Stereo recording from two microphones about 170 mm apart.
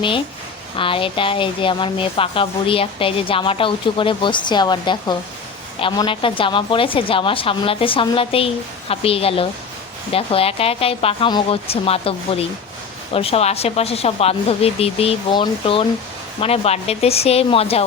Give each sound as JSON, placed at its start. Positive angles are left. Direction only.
{"t": 0.8, "sound": "speech", "side_deg": 30}